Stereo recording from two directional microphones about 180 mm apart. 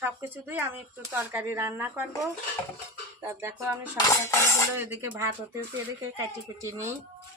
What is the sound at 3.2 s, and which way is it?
Speech, 15° right (ahead or behind).